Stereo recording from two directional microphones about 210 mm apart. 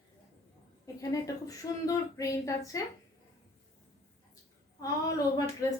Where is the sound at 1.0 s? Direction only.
15° left (ahead or behind).